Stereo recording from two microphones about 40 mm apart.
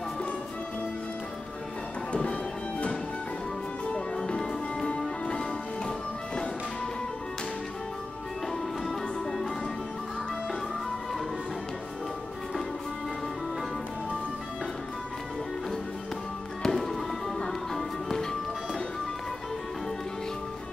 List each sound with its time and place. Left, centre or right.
3.9 s music: centre
4.8 s music: left
8.8 s music: centre
16.6 s music: centre